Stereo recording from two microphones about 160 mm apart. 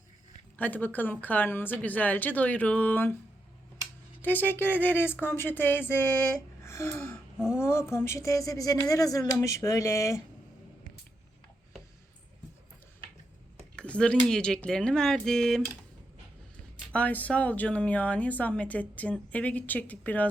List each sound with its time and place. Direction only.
0.5 s speech: 10° left (ahead or behind)
4.2 s speech: 10° left (ahead or behind)
13.7 s speech: 5° left (ahead or behind)
16.9 s speech: 10° left (ahead or behind)